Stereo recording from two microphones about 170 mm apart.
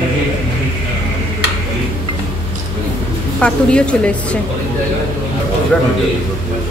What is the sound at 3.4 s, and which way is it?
Speech, 5° left (ahead or behind).